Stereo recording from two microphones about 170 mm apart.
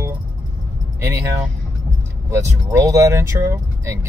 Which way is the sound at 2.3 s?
15° right (ahead or behind).